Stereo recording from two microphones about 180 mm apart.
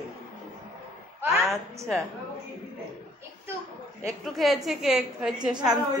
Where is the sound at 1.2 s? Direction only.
15° right (ahead or behind).